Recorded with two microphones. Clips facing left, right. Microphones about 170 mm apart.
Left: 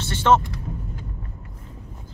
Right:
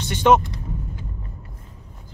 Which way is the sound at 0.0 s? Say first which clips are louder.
Right 2 dB; 15° right (ahead or behind).